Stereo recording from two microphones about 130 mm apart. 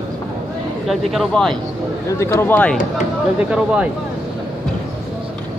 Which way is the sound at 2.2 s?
20° left (ahead or behind).